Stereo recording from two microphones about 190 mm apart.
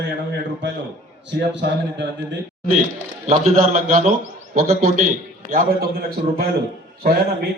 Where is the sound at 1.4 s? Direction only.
60° right (ahead or behind).